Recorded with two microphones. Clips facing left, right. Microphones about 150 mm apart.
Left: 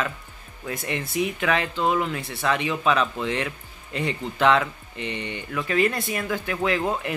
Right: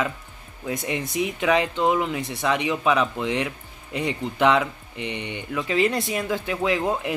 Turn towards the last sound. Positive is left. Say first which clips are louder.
# right 1 dB
turn(degrees=-15)  # may be behind; listen again after turning